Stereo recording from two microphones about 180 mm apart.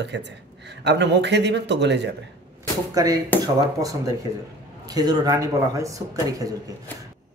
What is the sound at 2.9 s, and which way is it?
A man's voice, 20° right (ahead or behind).